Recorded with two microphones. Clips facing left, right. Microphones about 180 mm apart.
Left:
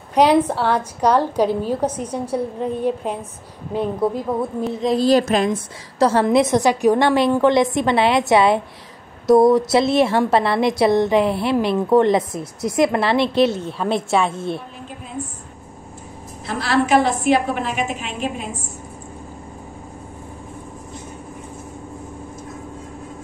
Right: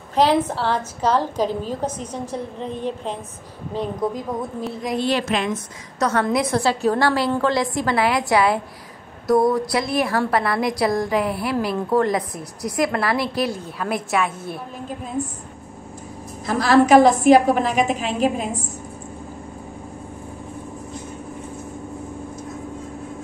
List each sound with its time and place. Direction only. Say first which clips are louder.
0.1 s a woman's voice: left 3 dB; 10° left (ahead or behind)
4.8 s a woman's voice: left 7 dB; 35° left (ahead or behind)
16.4 s a woman's voice: right 4 dB; 40° right (ahead or behind)